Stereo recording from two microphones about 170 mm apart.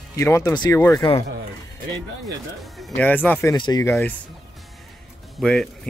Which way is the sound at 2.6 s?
Centre (ahead or behind).